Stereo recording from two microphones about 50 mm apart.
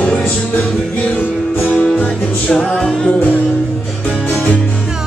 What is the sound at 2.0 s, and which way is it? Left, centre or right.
Music, left.